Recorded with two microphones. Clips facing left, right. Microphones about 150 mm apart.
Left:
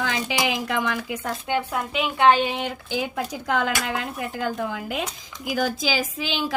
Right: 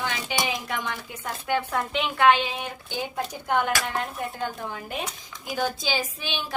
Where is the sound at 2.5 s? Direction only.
85° left.